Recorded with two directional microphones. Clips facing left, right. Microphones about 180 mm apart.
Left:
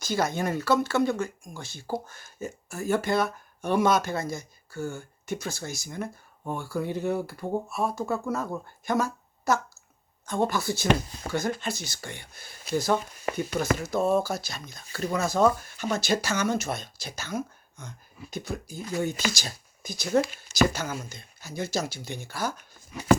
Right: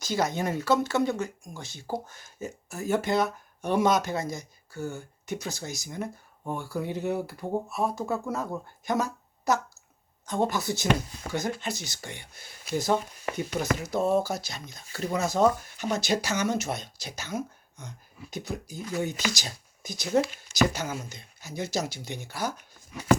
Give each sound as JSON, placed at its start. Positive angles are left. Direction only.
{"t": 0.0, "sound": "speech", "side_deg": -20}